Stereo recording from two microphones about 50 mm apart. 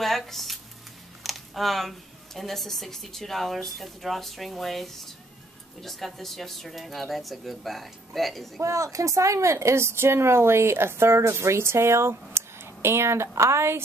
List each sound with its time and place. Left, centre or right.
0.0 s speech: centre
8.5 s a woman's voice: right